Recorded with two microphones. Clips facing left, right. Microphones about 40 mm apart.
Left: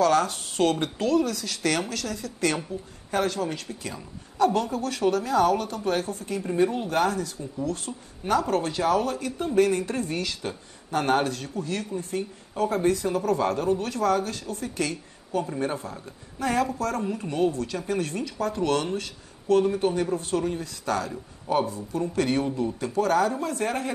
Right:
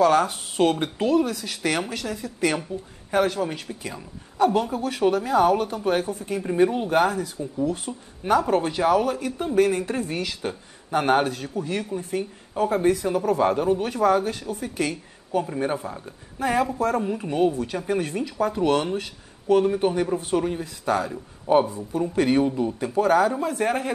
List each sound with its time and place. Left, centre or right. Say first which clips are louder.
0.0 s speech: right 3 dB; centre